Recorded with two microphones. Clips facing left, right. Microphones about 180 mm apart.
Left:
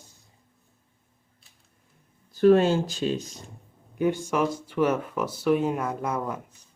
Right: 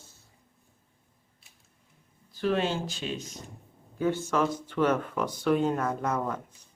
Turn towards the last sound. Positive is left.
turn(degrees=10)  # may be behind; listen again after turning